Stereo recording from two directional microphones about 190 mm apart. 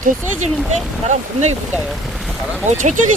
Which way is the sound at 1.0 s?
35° right (ahead or behind).